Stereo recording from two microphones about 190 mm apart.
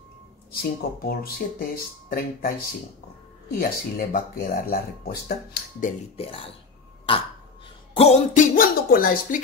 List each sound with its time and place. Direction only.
0.5 s speech: 50° left (ahead or behind)
6.1 s a man's voice: 30° left (ahead or behind)
7.9 s music: 35° left (ahead or behind)
8.5 s music: 50° left (ahead or behind)